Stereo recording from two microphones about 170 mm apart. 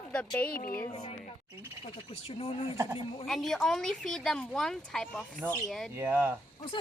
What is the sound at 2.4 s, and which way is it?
Speech, 35° left (ahead or behind).